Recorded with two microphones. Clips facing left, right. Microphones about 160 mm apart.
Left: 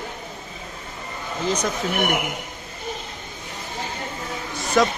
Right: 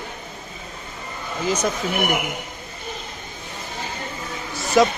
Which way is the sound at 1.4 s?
5° right (ahead or behind).